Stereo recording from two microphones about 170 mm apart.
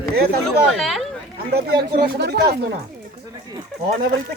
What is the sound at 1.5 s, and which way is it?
Speech, 70° right (ahead or behind).